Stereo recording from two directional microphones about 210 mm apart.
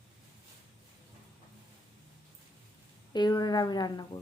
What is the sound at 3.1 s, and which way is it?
Speech, 20° left (ahead or behind).